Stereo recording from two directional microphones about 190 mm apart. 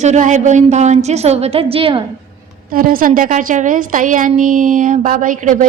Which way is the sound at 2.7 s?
50° right (ahead or behind).